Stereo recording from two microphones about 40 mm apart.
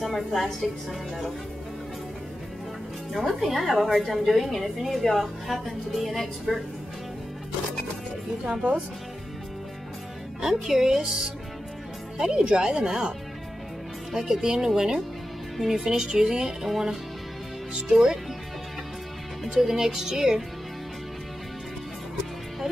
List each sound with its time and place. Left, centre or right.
0.0 s a woman's voice: centre
3.1 s a woman's voice: centre
10.4 s speech: centre
14.1 s speech: centre
16.6 s a woman's voice: centre
19.4 s speech: centre